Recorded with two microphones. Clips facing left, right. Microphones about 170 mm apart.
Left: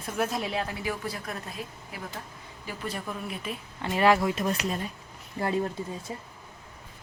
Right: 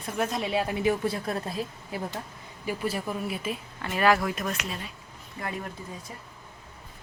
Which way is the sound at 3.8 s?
25° left (ahead or behind).